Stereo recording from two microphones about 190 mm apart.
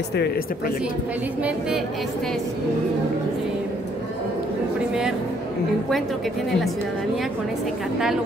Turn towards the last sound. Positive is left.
turn(degrees=0)  # may be behind; listen again after turning